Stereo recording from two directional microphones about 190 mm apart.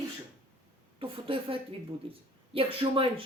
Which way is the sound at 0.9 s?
30° right (ahead or behind).